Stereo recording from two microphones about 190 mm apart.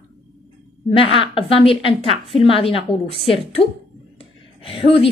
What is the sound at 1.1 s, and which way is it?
A woman's voice, 30° left (ahead or behind).